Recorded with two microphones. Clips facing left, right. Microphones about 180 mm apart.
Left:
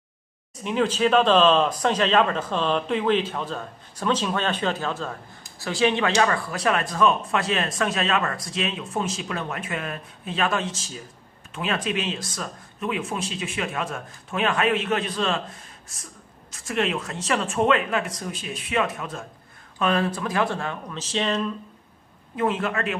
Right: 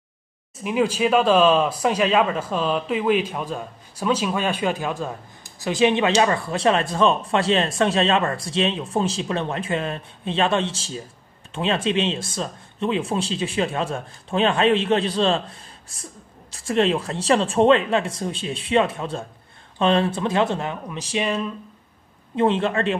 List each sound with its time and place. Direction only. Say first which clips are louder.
0.7 s speech: right 1 dB; 10° right (ahead or behind)
22.3 s speech: right 5 dB; 30° right (ahead or behind)